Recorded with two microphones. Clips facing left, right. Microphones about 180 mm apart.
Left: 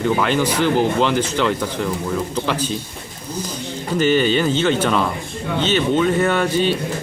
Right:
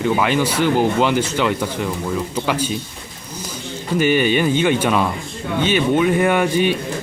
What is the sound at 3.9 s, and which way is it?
Speech, 10° right (ahead or behind).